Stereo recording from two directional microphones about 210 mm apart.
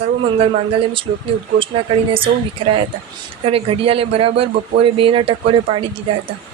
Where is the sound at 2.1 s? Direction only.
25° right (ahead or behind).